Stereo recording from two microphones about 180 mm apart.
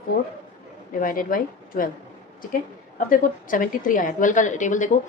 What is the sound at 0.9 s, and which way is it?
Speech, 50° left (ahead or behind).